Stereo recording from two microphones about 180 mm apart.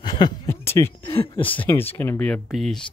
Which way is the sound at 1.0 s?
30° left (ahead or behind).